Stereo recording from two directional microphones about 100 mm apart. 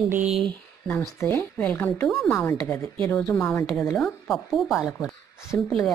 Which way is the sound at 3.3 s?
20° left (ahead or behind).